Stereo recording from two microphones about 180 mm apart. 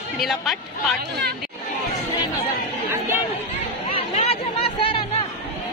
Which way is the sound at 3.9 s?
30° left (ahead or behind).